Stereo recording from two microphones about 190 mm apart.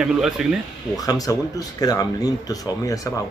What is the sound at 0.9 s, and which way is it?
Speech, 20° left (ahead or behind).